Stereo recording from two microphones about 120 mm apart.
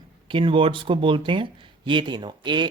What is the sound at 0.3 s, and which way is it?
Speech, 45° right (ahead or behind).